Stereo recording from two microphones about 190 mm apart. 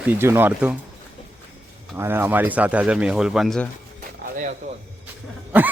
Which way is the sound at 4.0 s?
45° right (ahead or behind).